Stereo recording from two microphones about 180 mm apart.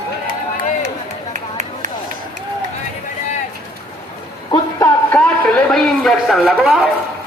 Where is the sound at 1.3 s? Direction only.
45° right (ahead or behind).